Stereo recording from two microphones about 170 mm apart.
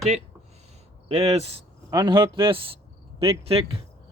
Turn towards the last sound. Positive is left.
turn(degrees=-35)  # may be behind; listen again after turning